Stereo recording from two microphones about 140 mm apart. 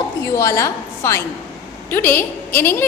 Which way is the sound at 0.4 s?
20° left (ahead or behind).